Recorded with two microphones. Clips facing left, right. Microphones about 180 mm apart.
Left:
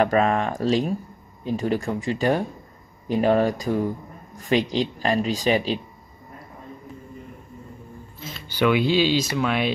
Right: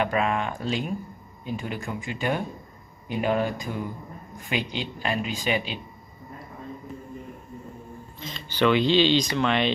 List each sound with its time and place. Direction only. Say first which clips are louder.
0.0 s speech: left 5 dB; 40° left (ahead or behind)
8.2 s speech: left 1 dB; 5° left (ahead or behind)